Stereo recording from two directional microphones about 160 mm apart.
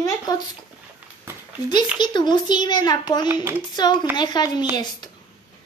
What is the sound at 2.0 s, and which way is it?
Speech, 30° left (ahead or behind).